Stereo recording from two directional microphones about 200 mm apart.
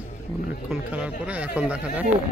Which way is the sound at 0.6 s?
5° right (ahead or behind).